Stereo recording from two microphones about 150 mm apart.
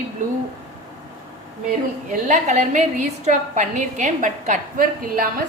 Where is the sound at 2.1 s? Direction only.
55° right (ahead or behind).